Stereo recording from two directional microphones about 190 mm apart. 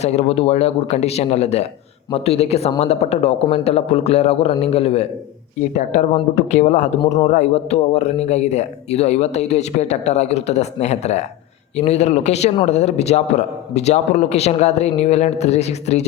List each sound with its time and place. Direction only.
0.0 s a man's voice: 35° left (ahead or behind)